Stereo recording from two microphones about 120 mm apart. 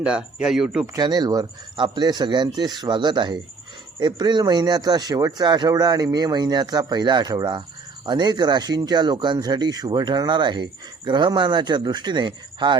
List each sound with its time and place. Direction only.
0.0 s speech: 10° right (ahead or behind)
0.9 s speech: 35° right (ahead or behind)